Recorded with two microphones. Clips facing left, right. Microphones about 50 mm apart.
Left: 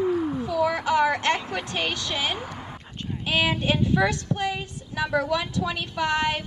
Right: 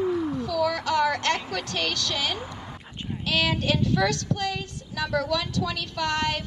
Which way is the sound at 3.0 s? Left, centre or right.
Centre.